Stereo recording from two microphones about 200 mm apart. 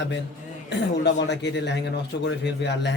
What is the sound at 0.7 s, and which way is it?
A man's voice, 60° left (ahead or behind).